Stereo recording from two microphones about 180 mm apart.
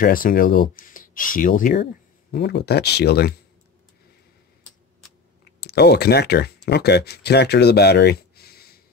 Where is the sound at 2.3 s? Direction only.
65° left (ahead or behind).